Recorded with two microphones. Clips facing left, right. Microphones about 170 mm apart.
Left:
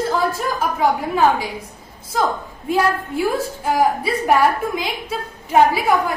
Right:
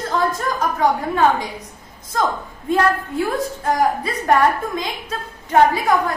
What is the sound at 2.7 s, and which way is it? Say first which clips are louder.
A woman's voice: right 1 dB; 10° left (ahead or behind).